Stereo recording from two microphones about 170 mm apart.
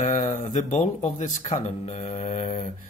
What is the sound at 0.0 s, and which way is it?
Speech, 45° left (ahead or behind).